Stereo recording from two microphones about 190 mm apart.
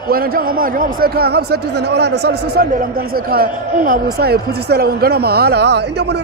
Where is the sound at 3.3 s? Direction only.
50° right (ahead or behind).